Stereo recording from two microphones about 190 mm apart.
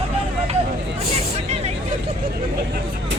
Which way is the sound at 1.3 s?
35° right (ahead or behind).